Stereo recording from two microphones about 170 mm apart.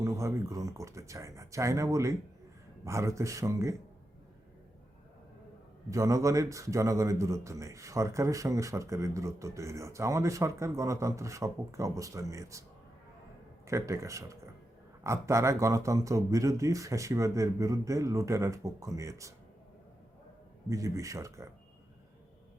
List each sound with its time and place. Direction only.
0.0 s speech: 20° right (ahead or behind)
5.9 s speech: 20° right (ahead or behind)
13.7 s speech: 15° right (ahead or behind)
20.7 s speech: 20° right (ahead or behind)